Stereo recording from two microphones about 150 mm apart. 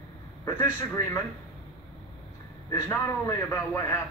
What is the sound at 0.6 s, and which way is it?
Speech, 20° left (ahead or behind).